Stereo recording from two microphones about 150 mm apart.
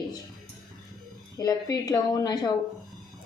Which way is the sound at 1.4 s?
25° left (ahead or behind).